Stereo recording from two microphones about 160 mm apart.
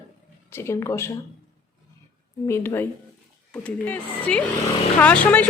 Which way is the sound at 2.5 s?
15° left (ahead or behind).